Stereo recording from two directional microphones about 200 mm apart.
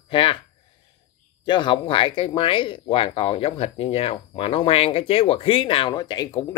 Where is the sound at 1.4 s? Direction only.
25° left (ahead or behind).